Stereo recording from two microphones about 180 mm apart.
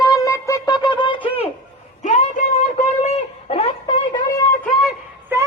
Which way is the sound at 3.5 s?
30° left (ahead or behind).